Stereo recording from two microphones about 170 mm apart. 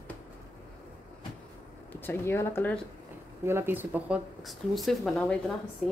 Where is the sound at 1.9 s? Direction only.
15° left (ahead or behind).